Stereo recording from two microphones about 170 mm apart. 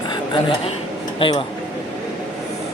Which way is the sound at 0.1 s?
30° left (ahead or behind).